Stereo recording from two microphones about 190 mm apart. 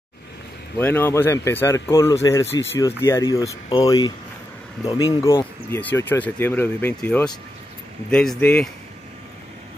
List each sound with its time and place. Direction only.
0.7 s speech: 10° left (ahead or behind)
5.7 s speech: 10° left (ahead or behind)